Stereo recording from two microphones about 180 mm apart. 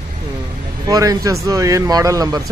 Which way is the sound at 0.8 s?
20° right (ahead or behind).